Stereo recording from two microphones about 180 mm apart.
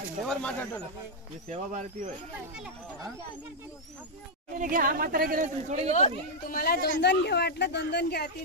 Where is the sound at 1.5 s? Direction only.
40° right (ahead or behind).